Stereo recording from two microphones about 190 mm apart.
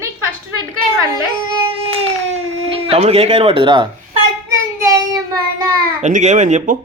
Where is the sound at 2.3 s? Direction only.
30° right (ahead or behind).